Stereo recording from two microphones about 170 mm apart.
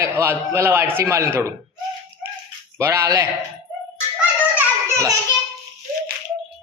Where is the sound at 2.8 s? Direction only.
15° right (ahead or behind).